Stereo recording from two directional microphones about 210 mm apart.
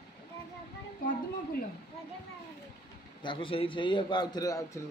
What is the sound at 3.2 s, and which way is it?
A man's voice, 25° left (ahead or behind).